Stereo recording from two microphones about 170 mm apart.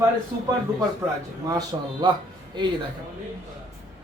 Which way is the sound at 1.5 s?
20° right (ahead or behind).